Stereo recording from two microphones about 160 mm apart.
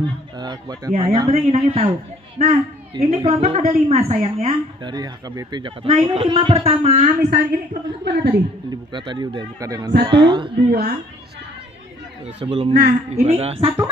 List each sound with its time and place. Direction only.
0.4 s a woman's voice: 25° right (ahead or behind)
4.9 s a woman's voice: 25° right (ahead or behind)
7.2 s a woman's voice: 70° right (ahead or behind)
8.0 s a woman's voice: 90° right
8.9 s speech: 30° right (ahead or behind)
10.7 s a woman's voice: 75° right (ahead or behind)
12.4 s a woman's voice: 35° right (ahead or behind)